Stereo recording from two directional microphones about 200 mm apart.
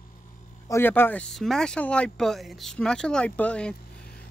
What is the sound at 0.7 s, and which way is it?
Speech, 10° left (ahead or behind).